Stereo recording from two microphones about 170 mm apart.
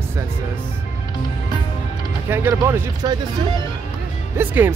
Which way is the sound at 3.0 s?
25° right (ahead or behind).